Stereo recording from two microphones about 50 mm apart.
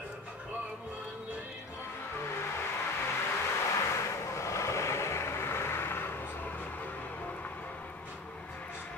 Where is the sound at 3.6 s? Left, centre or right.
Left.